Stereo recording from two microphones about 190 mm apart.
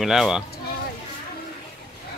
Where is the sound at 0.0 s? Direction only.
Centre (ahead or behind).